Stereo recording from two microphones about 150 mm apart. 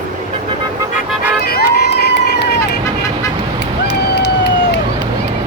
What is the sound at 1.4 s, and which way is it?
Run, 90° left.